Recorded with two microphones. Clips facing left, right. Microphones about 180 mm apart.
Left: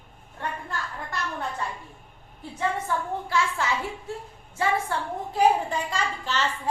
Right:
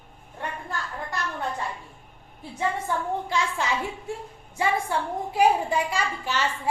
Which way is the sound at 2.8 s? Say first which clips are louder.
Right 1 dB; 20° right (ahead or behind).